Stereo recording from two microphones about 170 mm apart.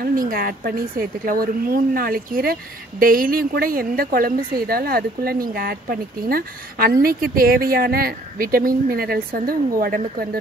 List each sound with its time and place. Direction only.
0.0 s speech: 55° right (ahead or behind)